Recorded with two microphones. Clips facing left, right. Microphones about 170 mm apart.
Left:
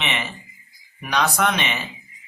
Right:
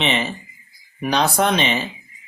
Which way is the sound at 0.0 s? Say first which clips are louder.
Right 6 dB; 30° right (ahead or behind).